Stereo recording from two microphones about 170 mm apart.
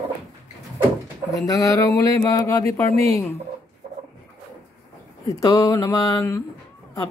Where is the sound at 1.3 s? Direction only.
20° left (ahead or behind).